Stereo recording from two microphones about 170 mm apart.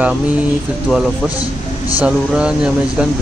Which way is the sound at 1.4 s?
20° left (ahead or behind).